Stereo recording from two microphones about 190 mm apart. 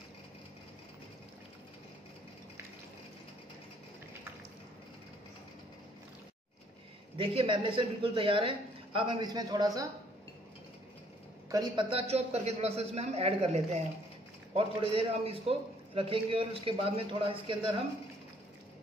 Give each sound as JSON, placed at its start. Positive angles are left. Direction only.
{"t": 7.2, "sound": "a man's voice", "side_deg": -25}
{"t": 11.5, "sound": "a man's voice", "side_deg": -25}